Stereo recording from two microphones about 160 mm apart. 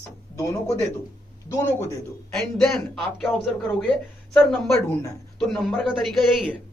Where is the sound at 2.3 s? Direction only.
Centre (ahead or behind).